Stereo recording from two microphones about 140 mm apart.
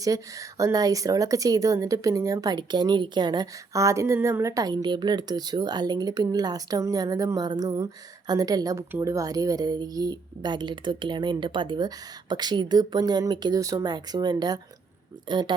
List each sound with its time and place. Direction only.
0.0 s speech: 25° right (ahead or behind)